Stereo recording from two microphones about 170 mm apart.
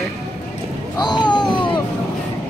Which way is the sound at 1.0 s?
25° left (ahead or behind).